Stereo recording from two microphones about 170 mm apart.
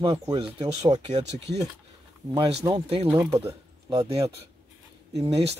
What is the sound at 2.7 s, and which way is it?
Speech, 35° right (ahead or behind).